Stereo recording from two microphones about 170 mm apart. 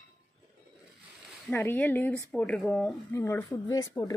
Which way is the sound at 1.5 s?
10° left (ahead or behind).